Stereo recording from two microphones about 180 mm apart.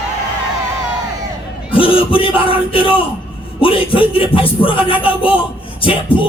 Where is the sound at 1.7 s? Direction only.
30° left (ahead or behind).